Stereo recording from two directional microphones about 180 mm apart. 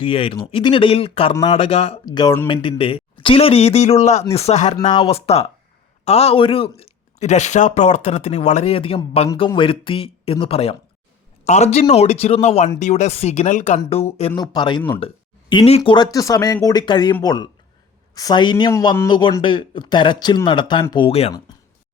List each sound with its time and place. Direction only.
0.0 s speech: 30° left (ahead or behind)
4.8 s a man's voice: 20° left (ahead or behind)
5.1 s a man's voice: 35° left (ahead or behind)
14.3 s a man's voice: 25° left (ahead or behind)